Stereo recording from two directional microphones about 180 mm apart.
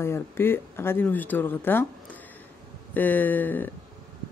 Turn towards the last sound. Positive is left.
turn(degrees=10)  # may be behind; listen again after turning